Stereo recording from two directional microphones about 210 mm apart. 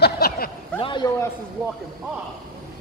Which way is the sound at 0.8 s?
20° left (ahead or behind).